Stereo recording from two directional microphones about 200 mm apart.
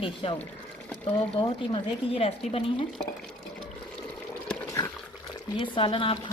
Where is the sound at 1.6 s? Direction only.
25° left (ahead or behind).